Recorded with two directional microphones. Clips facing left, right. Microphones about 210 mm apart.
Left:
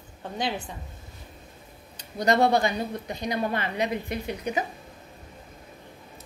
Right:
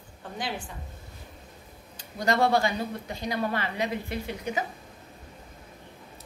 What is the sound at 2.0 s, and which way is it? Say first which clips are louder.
A woman's voice: left 3 dB; 20° left (ahead or behind).